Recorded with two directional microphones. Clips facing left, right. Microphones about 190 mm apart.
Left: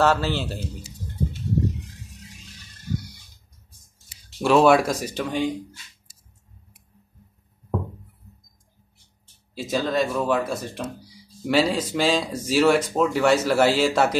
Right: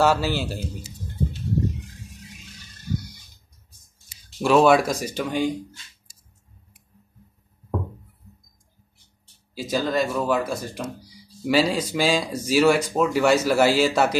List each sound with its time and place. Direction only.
0.0 s a man's voice: 10° right (ahead or behind)
4.4 s speech: centre (ahead or behind)
9.6 s speech: centre (ahead or behind)